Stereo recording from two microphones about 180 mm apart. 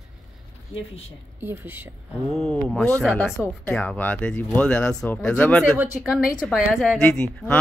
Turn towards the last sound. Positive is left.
turn(degrees=5)  # may be behind; listen again after turning